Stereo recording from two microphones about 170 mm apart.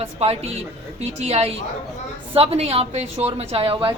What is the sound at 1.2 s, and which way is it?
A woman's voice, 35° right (ahead or behind).